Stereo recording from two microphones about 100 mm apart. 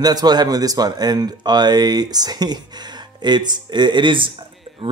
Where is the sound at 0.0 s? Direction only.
40° right (ahead or behind).